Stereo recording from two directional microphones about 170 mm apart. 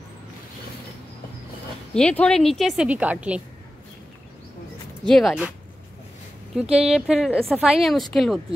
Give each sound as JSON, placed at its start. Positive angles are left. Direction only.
{"t": 2.0, "sound": "a woman's voice", "side_deg": 5}
{"t": 5.0, "sound": "a woman's voice", "side_deg": 0}
{"t": 6.6, "sound": "speech", "side_deg": -35}
{"t": 6.9, "sound": "a woman's voice", "side_deg": 0}